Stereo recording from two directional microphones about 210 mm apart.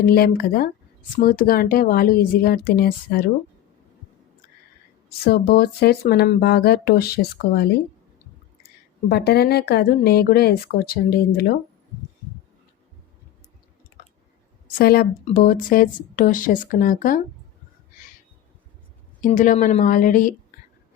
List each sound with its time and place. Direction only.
0.0 s speech: 45° left (ahead or behind)
5.0 s speech: 50° left (ahead or behind)
9.0 s speech: 50° left (ahead or behind)
14.8 s speech: 45° left (ahead or behind)
19.2 s speech: 40° left (ahead or behind)